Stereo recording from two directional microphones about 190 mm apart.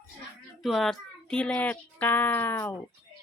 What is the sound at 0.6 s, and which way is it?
Speech, centre (ahead or behind).